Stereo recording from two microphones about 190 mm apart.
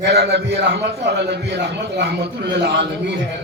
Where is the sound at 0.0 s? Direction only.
60° right (ahead or behind).